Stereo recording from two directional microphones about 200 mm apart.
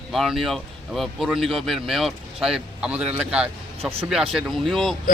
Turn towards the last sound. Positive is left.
turn(degrees=0)  # may be behind; listen again after turning